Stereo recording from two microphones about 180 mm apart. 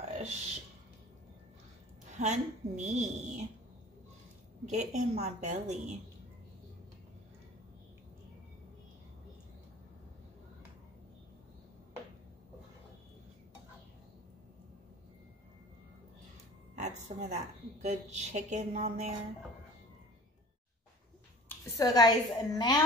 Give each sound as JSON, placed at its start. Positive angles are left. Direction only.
{"t": 0.1, "sound": "speech", "side_deg": -40}
{"t": 2.0, "sound": "speech", "side_deg": -40}
{"t": 4.6, "sound": "speech", "side_deg": -40}
{"t": 16.7, "sound": "a sound", "side_deg": -40}
{"t": 17.8, "sound": "speech", "side_deg": -40}
{"t": 21.5, "sound": "a child's voice", "side_deg": 20}